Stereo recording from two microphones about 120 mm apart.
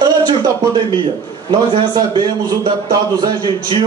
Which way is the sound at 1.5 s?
40° right (ahead or behind).